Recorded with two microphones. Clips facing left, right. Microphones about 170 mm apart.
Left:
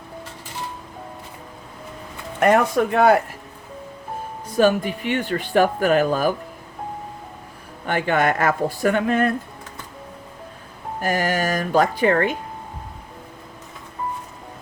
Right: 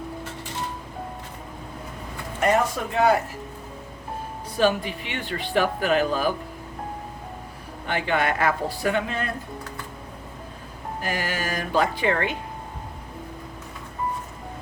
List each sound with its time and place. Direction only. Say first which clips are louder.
2.4 s speech: left 5 dB; 60° left (ahead or behind)
4.5 s speech: left 4 dB; 45° left (ahead or behind)
7.9 s speech: left 4 dB; 50° left (ahead or behind)
11.0 s speech: left 7 dB; 45° left (ahead or behind)